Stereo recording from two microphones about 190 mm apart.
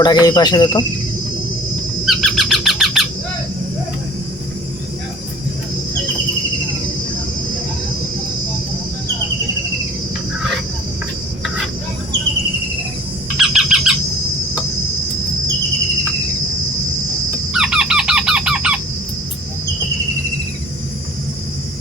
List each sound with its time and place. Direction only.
0.0 s speech: 20° left (ahead or behind)
2.0 s a sound: centre (ahead or behind)
13.5 s squawk: 5° right (ahead or behind)
17.5 s squawk: 5° right (ahead or behind)